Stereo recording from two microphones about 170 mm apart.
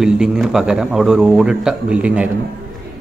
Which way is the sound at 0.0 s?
5° right (ahead or behind).